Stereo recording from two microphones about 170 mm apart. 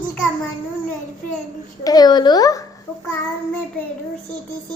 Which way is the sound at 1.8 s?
20° left (ahead or behind).